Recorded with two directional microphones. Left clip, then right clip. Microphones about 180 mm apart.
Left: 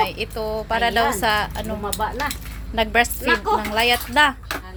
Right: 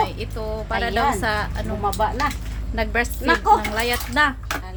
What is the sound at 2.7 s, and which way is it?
A woman's voice, 25° left (ahead or behind).